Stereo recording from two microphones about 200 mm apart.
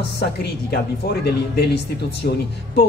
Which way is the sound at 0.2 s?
55° left (ahead or behind).